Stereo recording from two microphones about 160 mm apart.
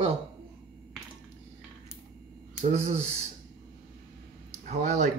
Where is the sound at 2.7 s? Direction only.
45° right (ahead or behind).